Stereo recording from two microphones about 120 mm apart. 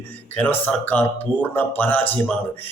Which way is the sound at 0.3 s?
15° left (ahead or behind).